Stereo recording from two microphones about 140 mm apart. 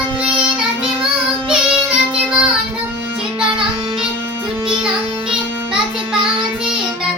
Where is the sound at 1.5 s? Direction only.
10° right (ahead or behind).